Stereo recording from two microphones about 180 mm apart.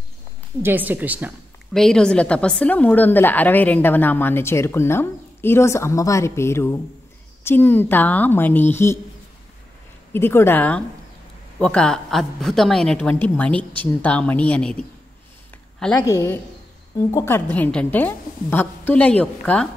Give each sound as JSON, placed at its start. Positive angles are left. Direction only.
{"t": 0.6, "sound": "a woman's voice", "side_deg": -10}
{"t": 1.7, "sound": "a woman's voice", "side_deg": 5}
{"t": 10.1, "sound": "a woman's voice", "side_deg": 15}
{"t": 16.0, "sound": "a woman's voice", "side_deg": 15}